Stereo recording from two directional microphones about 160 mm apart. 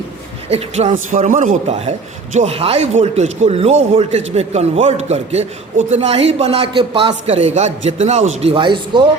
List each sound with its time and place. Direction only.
0.4 s a man's voice: 40° right (ahead or behind); by 1.5 s 55° right (ahead or behind)
1.7 s a man's voice: 40° right (ahead or behind)